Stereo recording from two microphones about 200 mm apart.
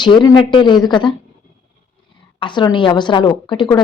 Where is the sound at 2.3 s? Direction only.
25° left (ahead or behind).